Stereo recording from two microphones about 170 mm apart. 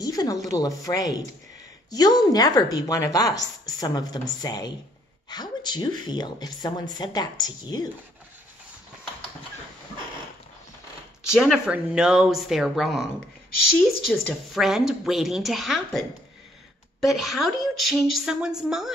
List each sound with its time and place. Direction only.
0.0 s speech: 20° left (ahead or behind)
11.3 s speech: 5° right (ahead or behind)
14.0 s speech: centre (ahead or behind)